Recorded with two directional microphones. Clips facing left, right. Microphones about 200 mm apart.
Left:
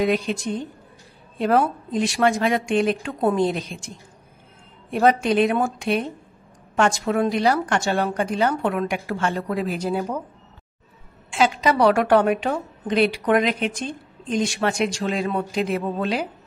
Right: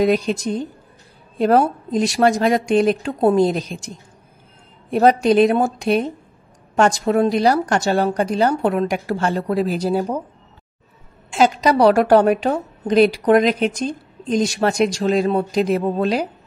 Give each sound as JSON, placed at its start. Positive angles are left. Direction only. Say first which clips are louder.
{"t": 0.0, "sound": "a woman's voice", "louder": "right 4 dB", "side_deg": -40}
{"t": 4.9, "sound": "a woman's voice", "louder": "right 5 dB", "side_deg": -40}
{"t": 11.2, "sound": "a woman's voice", "louder": "right 4 dB", "side_deg": -40}